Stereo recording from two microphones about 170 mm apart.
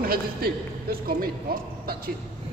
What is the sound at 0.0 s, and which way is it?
Speech, 60° right (ahead or behind).